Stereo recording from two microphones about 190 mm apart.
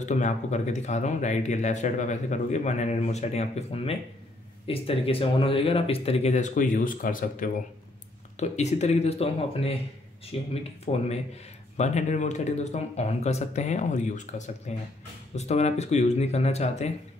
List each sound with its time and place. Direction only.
0.0 s speech: 40° left (ahead or behind)